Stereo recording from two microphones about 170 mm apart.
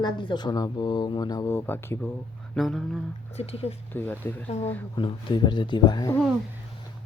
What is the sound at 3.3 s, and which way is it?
Speech, 35° left (ahead or behind).